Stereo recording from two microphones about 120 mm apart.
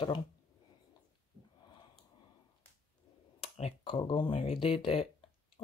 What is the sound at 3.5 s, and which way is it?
Speech, 55° left (ahead or behind).